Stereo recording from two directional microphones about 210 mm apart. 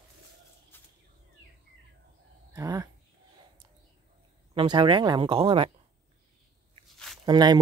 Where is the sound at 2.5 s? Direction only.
15° right (ahead or behind).